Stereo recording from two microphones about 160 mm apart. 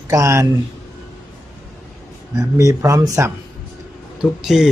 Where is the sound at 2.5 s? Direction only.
20° right (ahead or behind).